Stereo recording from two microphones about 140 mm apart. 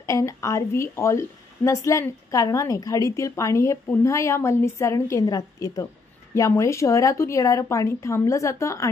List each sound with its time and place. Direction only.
0.0 s a woman's voice: 20° left (ahead or behind)